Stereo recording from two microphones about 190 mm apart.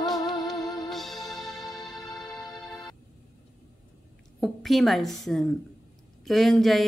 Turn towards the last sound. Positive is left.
turn(degrees=0)  # may be behind; listen again after turning